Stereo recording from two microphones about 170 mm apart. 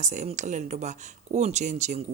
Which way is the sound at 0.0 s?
45° right (ahead or behind).